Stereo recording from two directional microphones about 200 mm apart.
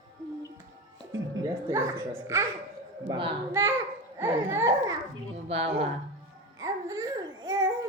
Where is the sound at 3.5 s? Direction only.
15° right (ahead or behind).